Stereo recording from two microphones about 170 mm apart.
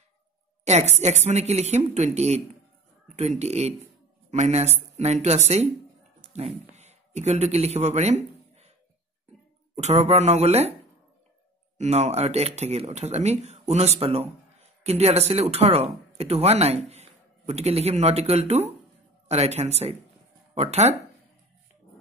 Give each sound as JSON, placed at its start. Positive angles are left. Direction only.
{"t": 0.7, "sound": "speech", "side_deg": -40}
{"t": 6.2, "sound": "a sound", "side_deg": -40}
{"t": 9.8, "sound": "speech", "side_deg": -40}
{"t": 11.8, "sound": "a man's voice", "side_deg": -40}